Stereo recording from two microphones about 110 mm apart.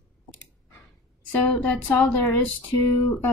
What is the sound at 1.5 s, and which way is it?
Speech, 10° left (ahead or behind).